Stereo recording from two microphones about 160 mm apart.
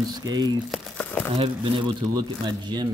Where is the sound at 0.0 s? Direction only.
25° right (ahead or behind).